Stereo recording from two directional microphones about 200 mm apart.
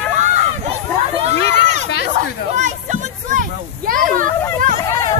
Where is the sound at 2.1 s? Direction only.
35° right (ahead or behind).